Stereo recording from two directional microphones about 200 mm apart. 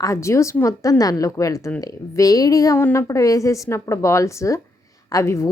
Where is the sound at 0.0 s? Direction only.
15° left (ahead or behind).